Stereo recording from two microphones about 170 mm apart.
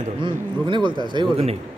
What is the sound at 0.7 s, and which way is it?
Speech, 25° right (ahead or behind).